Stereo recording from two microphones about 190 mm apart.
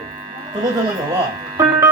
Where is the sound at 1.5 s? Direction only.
15° right (ahead or behind).